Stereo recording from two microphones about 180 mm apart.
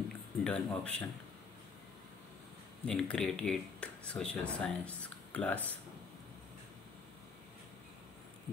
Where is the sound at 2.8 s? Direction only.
5° left (ahead or behind).